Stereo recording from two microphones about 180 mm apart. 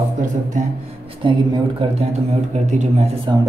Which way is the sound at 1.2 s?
25° right (ahead or behind).